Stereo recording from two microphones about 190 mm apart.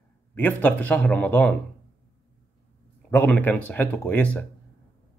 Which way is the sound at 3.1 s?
10° left (ahead or behind).